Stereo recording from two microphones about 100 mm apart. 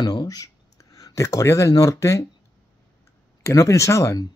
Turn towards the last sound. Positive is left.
turn(degrees=30)  # may be behind; listen again after turning